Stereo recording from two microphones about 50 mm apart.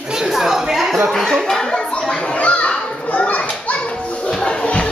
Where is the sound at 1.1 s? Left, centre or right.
Centre.